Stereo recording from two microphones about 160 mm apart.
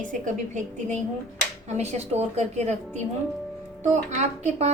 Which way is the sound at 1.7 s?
40° right (ahead or behind).